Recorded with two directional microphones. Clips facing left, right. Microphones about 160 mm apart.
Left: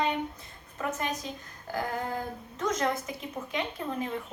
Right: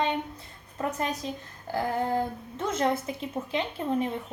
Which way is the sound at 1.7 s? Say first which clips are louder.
Right 5 dB; 30° right (ahead or behind).